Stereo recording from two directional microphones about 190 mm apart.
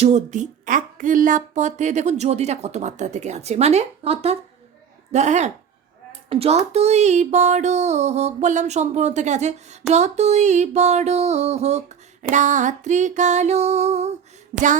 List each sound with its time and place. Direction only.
0.0 s speech: 35° right (ahead or behind)